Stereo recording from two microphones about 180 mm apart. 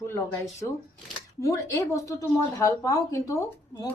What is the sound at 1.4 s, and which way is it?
Speech, 15° left (ahead or behind).